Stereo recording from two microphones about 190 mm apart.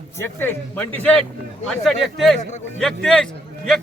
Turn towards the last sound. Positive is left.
turn(degrees=0)  # may be behind; listen again after turning